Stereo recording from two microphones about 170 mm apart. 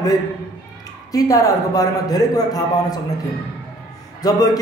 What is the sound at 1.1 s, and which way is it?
A man's voice, 20° left (ahead or behind).